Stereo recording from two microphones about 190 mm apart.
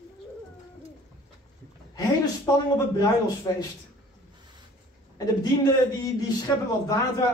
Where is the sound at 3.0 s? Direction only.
20° left (ahead or behind).